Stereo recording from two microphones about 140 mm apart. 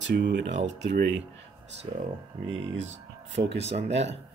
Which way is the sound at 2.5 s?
50° right (ahead or behind).